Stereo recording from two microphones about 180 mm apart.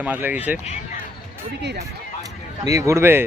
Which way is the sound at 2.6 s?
15° right (ahead or behind).